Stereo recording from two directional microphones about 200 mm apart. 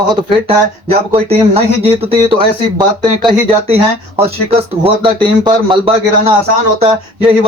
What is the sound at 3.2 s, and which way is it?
Speech, 30° right (ahead or behind).